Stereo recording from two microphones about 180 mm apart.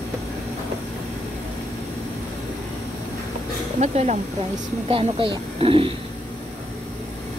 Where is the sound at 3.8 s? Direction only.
40° right (ahead or behind).